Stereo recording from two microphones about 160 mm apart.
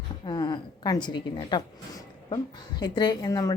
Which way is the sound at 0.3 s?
30° left (ahead or behind).